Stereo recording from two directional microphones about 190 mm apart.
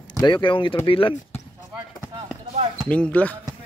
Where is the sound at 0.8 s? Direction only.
30° left (ahead or behind).